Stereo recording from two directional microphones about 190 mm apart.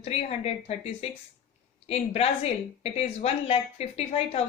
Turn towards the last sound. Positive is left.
turn(degrees=35)  # may be behind; listen again after turning